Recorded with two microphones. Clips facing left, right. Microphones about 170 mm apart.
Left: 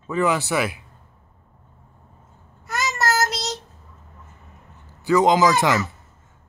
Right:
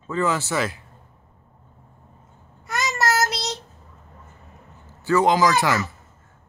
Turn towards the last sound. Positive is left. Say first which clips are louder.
# left 2 dB
turn(degrees=20)  # may be behind; listen again after turning